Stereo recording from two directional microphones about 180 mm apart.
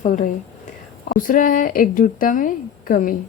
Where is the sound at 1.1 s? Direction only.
50° left (ahead or behind).